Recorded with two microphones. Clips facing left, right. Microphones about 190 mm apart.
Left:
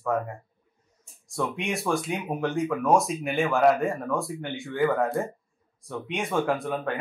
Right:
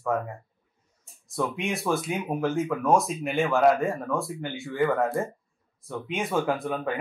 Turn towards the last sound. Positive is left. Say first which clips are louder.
# even
turn(degrees=0)  # may be behind; listen again after turning